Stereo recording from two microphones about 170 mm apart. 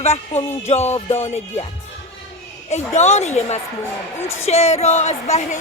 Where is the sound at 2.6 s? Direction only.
40° left (ahead or behind).